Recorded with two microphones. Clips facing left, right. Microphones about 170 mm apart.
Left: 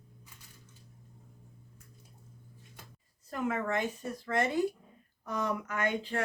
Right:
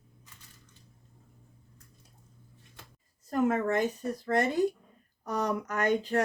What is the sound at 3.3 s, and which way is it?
Speech, 40° right (ahead or behind).